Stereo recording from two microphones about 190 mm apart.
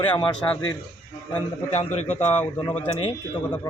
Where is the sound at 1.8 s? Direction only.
10° left (ahead or behind).